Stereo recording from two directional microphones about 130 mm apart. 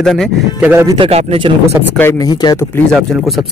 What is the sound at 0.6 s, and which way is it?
Speech, 10° right (ahead or behind).